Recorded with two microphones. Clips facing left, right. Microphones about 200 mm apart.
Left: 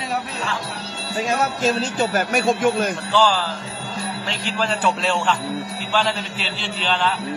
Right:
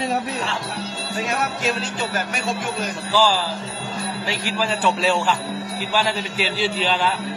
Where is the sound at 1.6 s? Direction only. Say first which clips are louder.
Left 4 dB; 45° left (ahead or behind).